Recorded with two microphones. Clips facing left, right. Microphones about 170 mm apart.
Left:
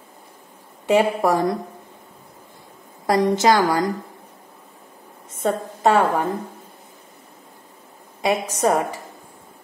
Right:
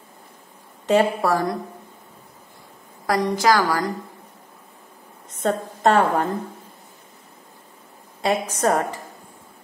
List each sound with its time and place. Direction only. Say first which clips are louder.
0.8 s a woman's voice: left 1 dB; 15° left (ahead or behind)
3.1 s a woman's voice: left 2 dB; 25° left (ahead or behind)
5.4 s a woman's voice: even; 5° left (ahead or behind)
8.2 s a woman's voice: left 1 dB; 10° left (ahead or behind)